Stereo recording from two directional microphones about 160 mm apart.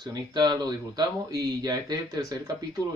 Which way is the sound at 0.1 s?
25° right (ahead or behind).